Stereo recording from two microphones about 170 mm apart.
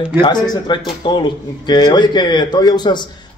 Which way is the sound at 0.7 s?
25° left (ahead or behind).